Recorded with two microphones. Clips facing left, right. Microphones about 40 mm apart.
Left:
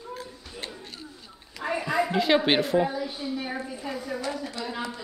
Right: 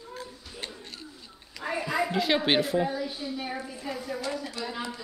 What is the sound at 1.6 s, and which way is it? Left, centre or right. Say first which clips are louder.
A woman's voice: left 2 dB; centre.